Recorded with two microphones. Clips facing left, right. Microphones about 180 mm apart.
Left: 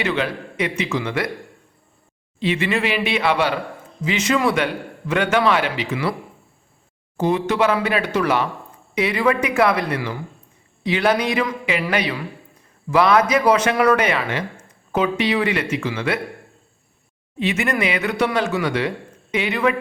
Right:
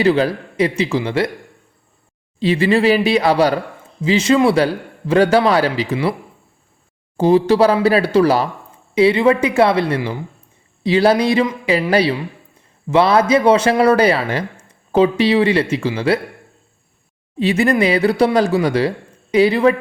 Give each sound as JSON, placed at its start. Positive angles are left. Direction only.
{"t": 0.0, "sound": "speech", "side_deg": -35}
{"t": 2.4, "sound": "speech", "side_deg": -35}
{"t": 7.2, "sound": "speech", "side_deg": -30}
{"t": 17.3, "sound": "speech", "side_deg": -35}